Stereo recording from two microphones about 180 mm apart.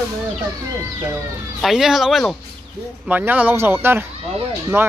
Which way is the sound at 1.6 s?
Centre (ahead or behind).